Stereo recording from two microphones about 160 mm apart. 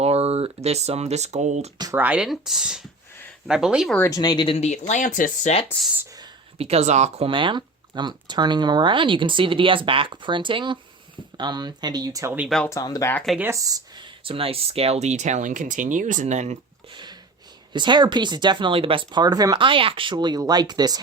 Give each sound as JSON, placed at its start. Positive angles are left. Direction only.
{"t": 0.0, "sound": "speech", "side_deg": -40}
{"t": 2.0, "sound": "speech", "side_deg": -5}
{"t": 3.9, "sound": "speech", "side_deg": 15}
{"t": 4.2, "sound": "speech", "side_deg": 30}
{"t": 5.6, "sound": "speech", "side_deg": 5}
{"t": 6.6, "sound": "speech", "side_deg": -40}
{"t": 7.3, "sound": "speech", "side_deg": -30}
{"t": 12.6, "sound": "speech", "side_deg": 20}
{"t": 13.1, "sound": "speech", "side_deg": 0}
{"t": 13.4, "sound": "speech", "side_deg": -20}
{"t": 16.9, "sound": "a sound", "side_deg": -30}
{"t": 17.7, "sound": "speech", "side_deg": -30}